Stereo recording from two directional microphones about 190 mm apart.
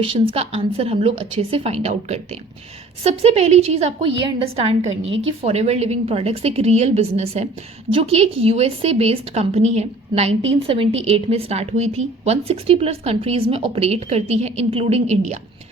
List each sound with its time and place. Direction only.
0.0 s a woman's voice: 30° right (ahead or behind)